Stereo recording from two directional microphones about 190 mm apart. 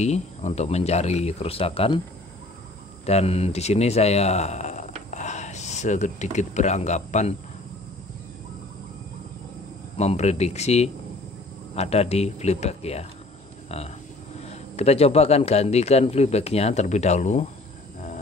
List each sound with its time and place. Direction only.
0.0 s a man's voice: 35° left (ahead or behind)
3.1 s a man's voice: 35° left (ahead or behind)
9.9 s a man's voice: 35° left (ahead or behind)